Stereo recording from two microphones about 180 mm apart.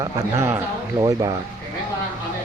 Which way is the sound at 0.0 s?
15° right (ahead or behind).